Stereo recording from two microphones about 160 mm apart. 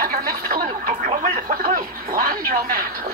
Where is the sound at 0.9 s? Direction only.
45° right (ahead or behind).